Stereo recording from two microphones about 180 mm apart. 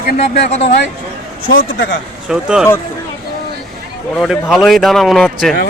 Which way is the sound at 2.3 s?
5° right (ahead or behind).